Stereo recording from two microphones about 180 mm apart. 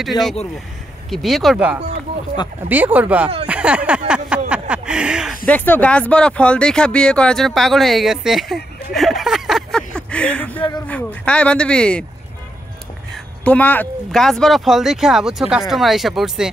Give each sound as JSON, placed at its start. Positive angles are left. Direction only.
{"t": 0.2, "sound": "speech", "side_deg": 20}
{"t": 1.1, "sound": "speech", "side_deg": 0}
{"t": 8.9, "sound": "a sound", "side_deg": 0}
{"t": 10.9, "sound": "speech", "side_deg": 5}
{"t": 13.4, "sound": "speech", "side_deg": 10}